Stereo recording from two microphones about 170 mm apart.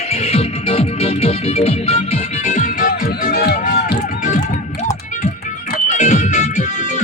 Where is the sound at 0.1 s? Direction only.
35° left (ahead or behind).